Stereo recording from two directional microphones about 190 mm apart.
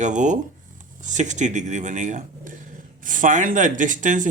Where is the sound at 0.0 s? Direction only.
40° right (ahead or behind).